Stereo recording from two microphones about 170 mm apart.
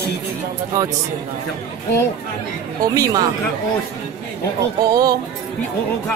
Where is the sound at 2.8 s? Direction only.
20° right (ahead or behind).